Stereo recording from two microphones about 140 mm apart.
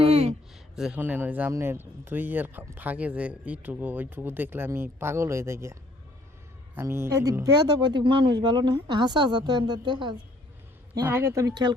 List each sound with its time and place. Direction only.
0.0 s a sound: 45° right (ahead or behind)
0.8 s speech: 10° right (ahead or behind)
6.7 s speech: 15° right (ahead or behind); by 10.2 s 35° right (ahead or behind)
11.0 s speech: 15° right (ahead or behind)